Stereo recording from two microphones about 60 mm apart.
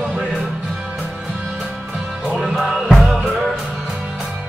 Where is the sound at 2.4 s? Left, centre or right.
Centre.